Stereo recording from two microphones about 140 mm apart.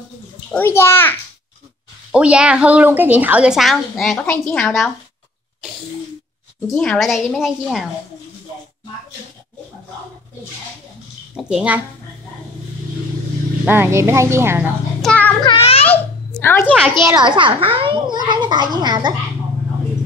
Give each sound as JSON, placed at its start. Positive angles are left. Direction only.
{"t": 0.5, "sound": "a child's voice", "side_deg": 15}
{"t": 2.1, "sound": "a woman's voice", "side_deg": -10}
{"t": 6.7, "sound": "a woman's voice", "side_deg": 5}
{"t": 11.3, "sound": "a woman's voice", "side_deg": -5}
{"t": 13.7, "sound": "a woman's voice", "side_deg": -15}
{"t": 15.0, "sound": "child singing", "side_deg": 5}
{"t": 15.5, "sound": "a child's voice", "side_deg": 45}
{"t": 15.9, "sound": "a sound", "side_deg": 15}
{"t": 17.1, "sound": "a child's voice", "side_deg": -35}